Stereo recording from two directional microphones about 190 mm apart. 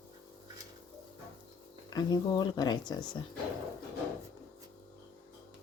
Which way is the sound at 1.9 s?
20° left (ahead or behind).